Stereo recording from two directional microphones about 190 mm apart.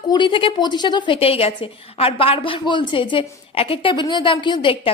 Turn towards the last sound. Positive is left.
turn(degrees=25)  # may be behind; listen again after turning